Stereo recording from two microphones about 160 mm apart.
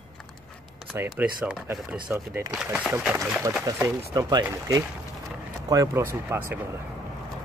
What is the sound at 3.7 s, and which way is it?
Speech, 15° right (ahead or behind).